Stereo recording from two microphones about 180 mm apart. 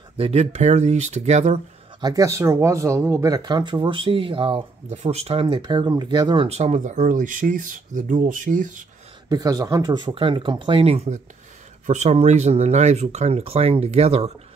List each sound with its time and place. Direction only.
0.2 s speech: 35° right (ahead or behind)
2.0 s speech: 20° right (ahead or behind); by 8.8 s 45° right (ahead or behind)
9.3 s speech: 20° right (ahead or behind)